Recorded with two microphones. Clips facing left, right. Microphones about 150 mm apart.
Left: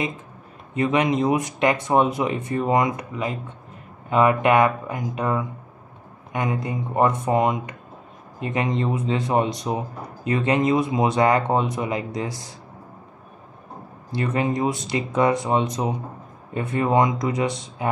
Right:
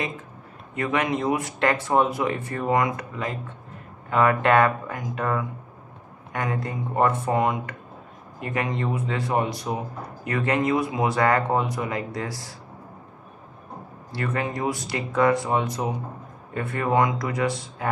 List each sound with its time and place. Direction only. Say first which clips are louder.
0.7 s speech: left 4 dB; 20° left (ahead or behind)
14.1 s speech: left 4 dB; 20° left (ahead or behind)